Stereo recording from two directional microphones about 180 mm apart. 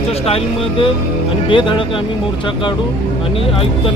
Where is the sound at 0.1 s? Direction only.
30° left (ahead or behind).